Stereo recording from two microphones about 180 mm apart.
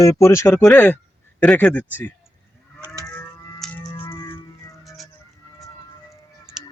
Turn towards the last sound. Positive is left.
turn(degrees=0)  # may be behind; listen again after turning